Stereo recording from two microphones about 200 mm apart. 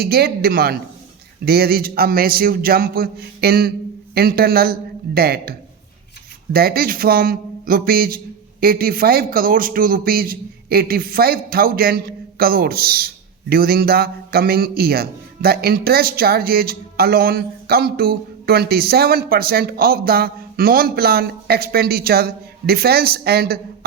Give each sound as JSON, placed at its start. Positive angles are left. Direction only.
{"t": 0.0, "sound": "a man's voice", "side_deg": -50}